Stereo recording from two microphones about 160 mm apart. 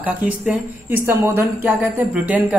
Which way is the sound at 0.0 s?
10° right (ahead or behind).